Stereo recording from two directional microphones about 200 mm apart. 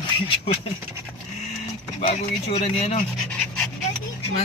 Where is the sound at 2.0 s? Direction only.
30° left (ahead or behind).